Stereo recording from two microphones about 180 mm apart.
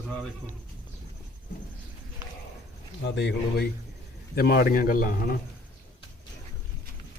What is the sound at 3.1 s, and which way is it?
Speech, 75° left (ahead or behind).